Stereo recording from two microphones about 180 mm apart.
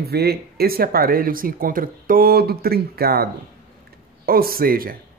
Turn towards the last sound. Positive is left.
turn(degrees=-55)  # may be behind; listen again after turning